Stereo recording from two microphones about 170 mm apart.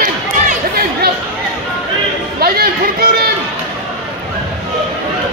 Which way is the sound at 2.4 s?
65° right (ahead or behind).